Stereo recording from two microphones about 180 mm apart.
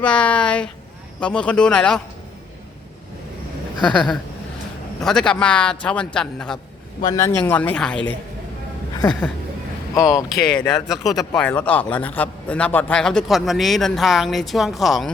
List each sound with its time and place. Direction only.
0.0 s a man's voice: 5° left (ahead or behind)
3.9 s a man's voice: 5° left (ahead or behind)
7.0 s speech: 20° left (ahead or behind)
9.9 s speech: 15° left (ahead or behind)
10.2 s a man's voice: centre (ahead or behind)